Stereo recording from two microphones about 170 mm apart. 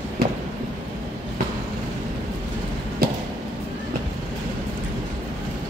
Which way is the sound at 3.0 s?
60° right (ahead or behind).